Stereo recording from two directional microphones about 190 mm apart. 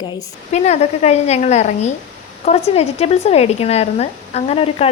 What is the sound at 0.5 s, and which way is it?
Speech, 35° left (ahead or behind).